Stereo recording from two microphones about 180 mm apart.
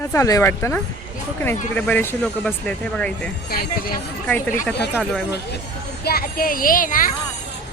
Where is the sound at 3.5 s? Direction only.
55° left (ahead or behind).